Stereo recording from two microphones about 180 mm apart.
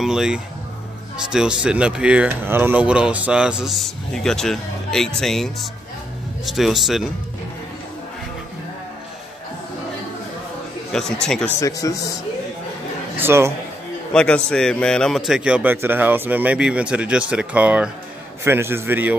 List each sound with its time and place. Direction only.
0.0 s speech: 5° right (ahead or behind)
10.9 s speech: 5° left (ahead or behind)
11.6 s speech: 20° left (ahead or behind)
13.2 s a man's voice: 15° right (ahead or behind)
14.1 s a man's voice: 5° left (ahead or behind); by 19.1 s 10° right (ahead or behind)